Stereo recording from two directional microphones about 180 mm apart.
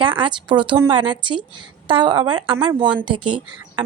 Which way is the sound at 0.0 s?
25° right (ahead or behind).